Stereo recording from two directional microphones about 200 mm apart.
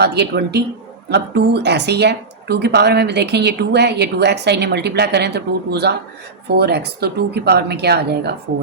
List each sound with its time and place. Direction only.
0.0 s speech: 55° right (ahead or behind)